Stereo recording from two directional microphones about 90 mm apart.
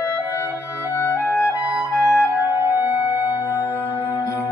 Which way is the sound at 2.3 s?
25° right (ahead or behind).